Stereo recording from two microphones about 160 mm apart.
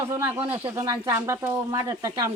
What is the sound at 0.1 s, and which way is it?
Speech, 15° right (ahead or behind).